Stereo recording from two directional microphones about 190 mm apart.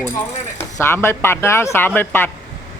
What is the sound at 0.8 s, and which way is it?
A man's voice, 15° left (ahead or behind).